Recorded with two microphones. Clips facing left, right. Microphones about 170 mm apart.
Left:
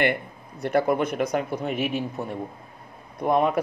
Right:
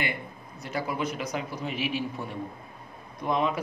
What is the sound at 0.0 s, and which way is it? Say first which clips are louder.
Speech: left 9 dB; 60° left (ahead or behind).